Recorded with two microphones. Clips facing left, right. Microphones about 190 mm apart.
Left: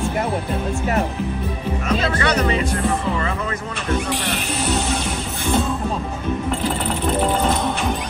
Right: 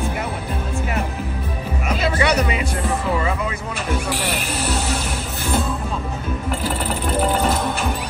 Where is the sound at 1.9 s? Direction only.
10° right (ahead or behind).